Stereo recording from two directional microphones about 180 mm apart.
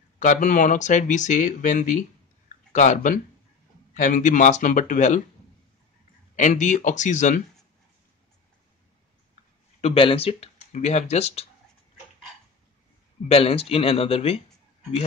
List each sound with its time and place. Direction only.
0.2 s speech: 45° left (ahead or behind)
6.3 s speech: 45° left (ahead or behind)
9.8 s speech: 35° left (ahead or behind)
13.3 s speech: 35° left (ahead or behind)